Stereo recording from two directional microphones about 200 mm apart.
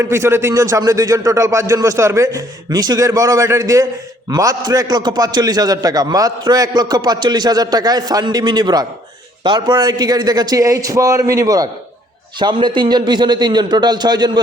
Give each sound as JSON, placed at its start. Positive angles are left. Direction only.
{"t": 0.0, "sound": "a man's voice", "side_deg": -15}